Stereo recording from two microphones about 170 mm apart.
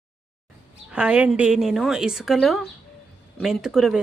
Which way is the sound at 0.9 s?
5° right (ahead or behind).